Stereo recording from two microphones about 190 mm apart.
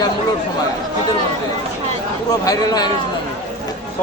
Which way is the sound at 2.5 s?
20° left (ahead or behind).